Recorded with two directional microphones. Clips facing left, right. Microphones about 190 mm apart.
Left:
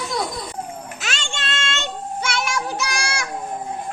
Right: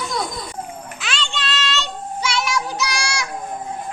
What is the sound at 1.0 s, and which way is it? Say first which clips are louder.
Child singing: right 3 dB; 45° left (ahead or behind).